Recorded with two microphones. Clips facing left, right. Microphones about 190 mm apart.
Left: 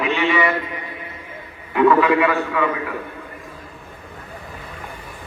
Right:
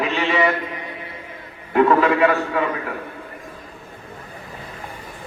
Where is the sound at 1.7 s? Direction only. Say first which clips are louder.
Left 1 dB; 45° right (ahead or behind).